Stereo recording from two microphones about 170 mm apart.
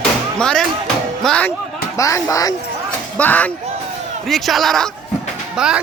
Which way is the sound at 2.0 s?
20° left (ahead or behind).